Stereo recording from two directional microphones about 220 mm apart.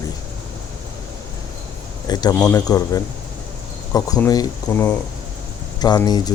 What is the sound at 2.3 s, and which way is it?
Speech, 5° left (ahead or behind).